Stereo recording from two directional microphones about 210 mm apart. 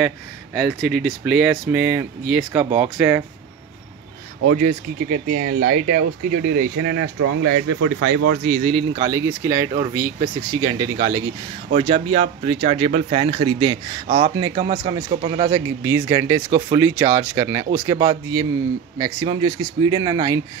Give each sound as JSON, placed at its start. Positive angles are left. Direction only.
{"t": 0.6, "sound": "speech", "side_deg": 0}
{"t": 4.5, "sound": "speech", "side_deg": -40}
{"t": 8.5, "sound": "speech", "side_deg": -30}
{"t": 14.0, "sound": "speech", "side_deg": -35}
{"t": 14.3, "sound": "speech", "side_deg": -20}